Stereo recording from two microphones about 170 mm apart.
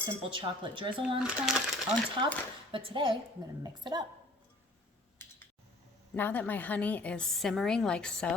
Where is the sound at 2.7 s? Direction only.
30° right (ahead or behind).